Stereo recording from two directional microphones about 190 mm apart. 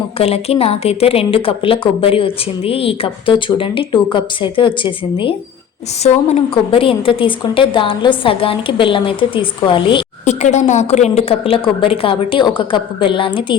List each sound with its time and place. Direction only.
0.2 s a woman's voice: 30° left (ahead or behind)
10.2 s a woman's voice: 35° left (ahead or behind)